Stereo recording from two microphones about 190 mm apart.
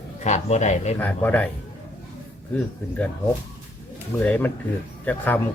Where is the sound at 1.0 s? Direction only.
10° left (ahead or behind).